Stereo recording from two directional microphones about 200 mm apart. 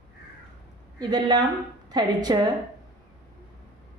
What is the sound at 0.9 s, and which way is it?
A woman's voice, 20° right (ahead or behind).